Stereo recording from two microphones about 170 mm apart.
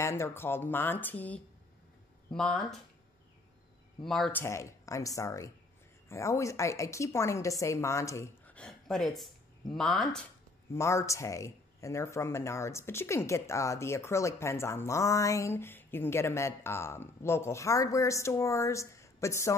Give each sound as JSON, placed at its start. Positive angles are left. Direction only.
{"t": 0.0, "sound": "speech", "side_deg": 15}
{"t": 4.0, "sound": "speech", "side_deg": 0}
{"t": 4.4, "sound": "speech", "side_deg": 15}
{"t": 10.7, "sound": "speech", "side_deg": 15}